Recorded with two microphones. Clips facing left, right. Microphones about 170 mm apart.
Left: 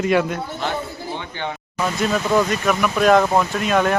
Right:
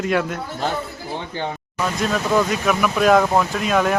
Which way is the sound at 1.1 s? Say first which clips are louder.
Right 4 dB; 35° right (ahead or behind).